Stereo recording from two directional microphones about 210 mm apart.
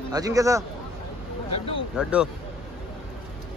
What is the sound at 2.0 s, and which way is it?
Speech, 5° right (ahead or behind).